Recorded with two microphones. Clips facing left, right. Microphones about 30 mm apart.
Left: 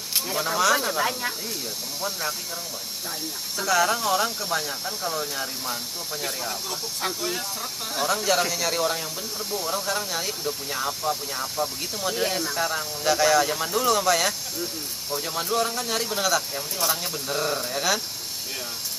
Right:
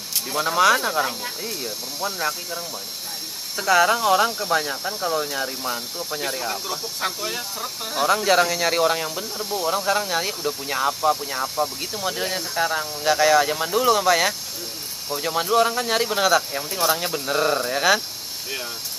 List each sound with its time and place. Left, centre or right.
0.4 s speech: centre
0.7 s speech: centre
1.4 s speech: centre